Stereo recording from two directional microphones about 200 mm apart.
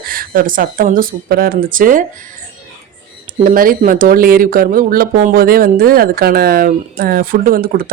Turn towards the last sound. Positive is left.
turn(degrees=-45)  # may be behind; listen again after turning